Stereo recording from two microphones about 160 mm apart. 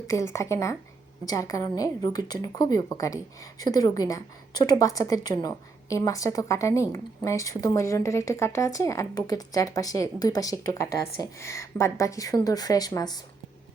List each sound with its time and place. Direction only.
0.1 s a woman's voice: 20° left (ahead or behind)